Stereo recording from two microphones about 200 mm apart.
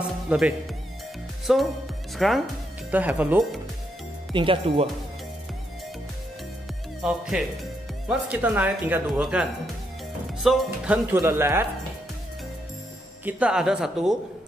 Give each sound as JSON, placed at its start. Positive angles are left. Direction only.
{"t": 0.3, "sound": "speech", "side_deg": -5}
{"t": 4.3, "sound": "speech", "side_deg": -25}
{"t": 7.0, "sound": "speech", "side_deg": -5}
{"t": 13.2, "sound": "speech", "side_deg": -5}